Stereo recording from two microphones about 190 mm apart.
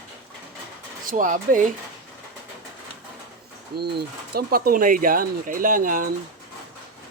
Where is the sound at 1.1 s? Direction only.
45° right (ahead or behind).